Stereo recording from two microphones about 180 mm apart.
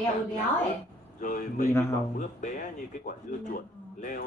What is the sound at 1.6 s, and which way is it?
Speech, 15° left (ahead or behind).